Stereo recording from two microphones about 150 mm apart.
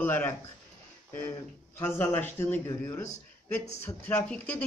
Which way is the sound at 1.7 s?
15° left (ahead or behind).